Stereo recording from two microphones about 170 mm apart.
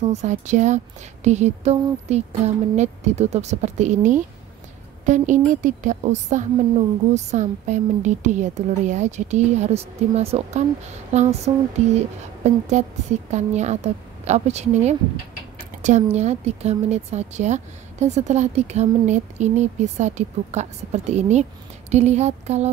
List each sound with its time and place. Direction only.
0.0 s a woman's voice: 40° right (ahead or behind)